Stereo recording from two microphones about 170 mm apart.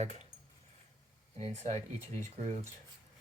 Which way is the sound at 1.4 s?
40° right (ahead or behind).